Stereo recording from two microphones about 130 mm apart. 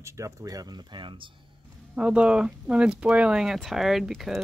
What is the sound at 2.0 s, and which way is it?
Speech, 10° right (ahead or behind).